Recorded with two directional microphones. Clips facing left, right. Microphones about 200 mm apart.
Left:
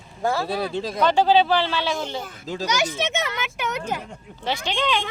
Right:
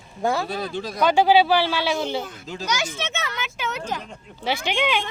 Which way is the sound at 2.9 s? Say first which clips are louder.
Left 4 dB; 15° left (ahead or behind).